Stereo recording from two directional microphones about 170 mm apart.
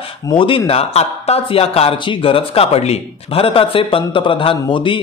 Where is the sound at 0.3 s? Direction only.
30° left (ahead or behind).